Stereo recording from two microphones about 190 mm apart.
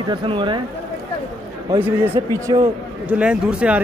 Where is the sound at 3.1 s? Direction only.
5° right (ahead or behind).